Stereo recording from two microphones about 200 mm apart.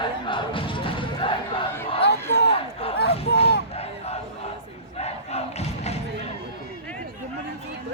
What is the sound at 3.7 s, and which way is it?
Battle cry, 30° left (ahead or behind).